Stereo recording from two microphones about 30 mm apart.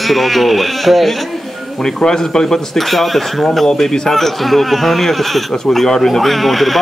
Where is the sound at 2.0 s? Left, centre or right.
Left.